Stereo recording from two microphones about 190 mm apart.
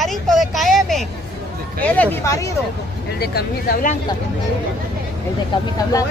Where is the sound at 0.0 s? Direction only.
Centre (ahead or behind).